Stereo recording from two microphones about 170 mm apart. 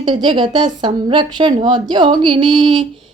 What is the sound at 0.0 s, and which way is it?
A woman's voice, 30° right (ahead or behind).